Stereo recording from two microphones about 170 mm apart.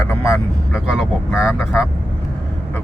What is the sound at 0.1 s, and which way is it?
Vehicle, 20° left (ahead or behind).